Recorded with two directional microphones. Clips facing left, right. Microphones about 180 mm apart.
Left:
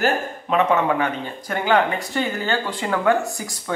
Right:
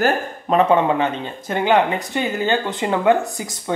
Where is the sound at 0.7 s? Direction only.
25° right (ahead or behind).